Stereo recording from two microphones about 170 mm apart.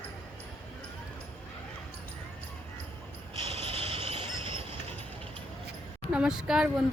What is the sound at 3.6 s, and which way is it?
Vehicle, 35° right (ahead or behind).